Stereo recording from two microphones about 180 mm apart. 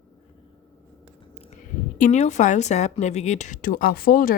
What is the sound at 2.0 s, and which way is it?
Speech, 40° left (ahead or behind).